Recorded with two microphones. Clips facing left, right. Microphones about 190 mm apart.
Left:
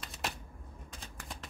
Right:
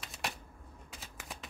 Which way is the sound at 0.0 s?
Centre (ahead or behind).